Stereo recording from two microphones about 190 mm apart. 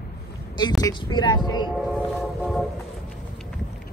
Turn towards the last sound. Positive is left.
turn(degrees=0)  # may be behind; listen again after turning